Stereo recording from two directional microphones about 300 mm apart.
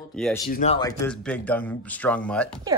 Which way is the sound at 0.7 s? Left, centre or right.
Centre.